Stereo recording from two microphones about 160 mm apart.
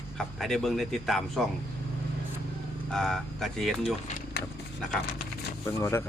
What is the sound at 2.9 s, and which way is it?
Speech, 5° left (ahead or behind).